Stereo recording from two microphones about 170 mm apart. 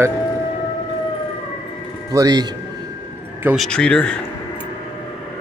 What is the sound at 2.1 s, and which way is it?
Speech, 20° right (ahead or behind).